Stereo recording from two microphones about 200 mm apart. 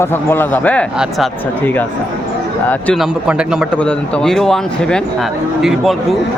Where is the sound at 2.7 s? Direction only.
5° left (ahead or behind).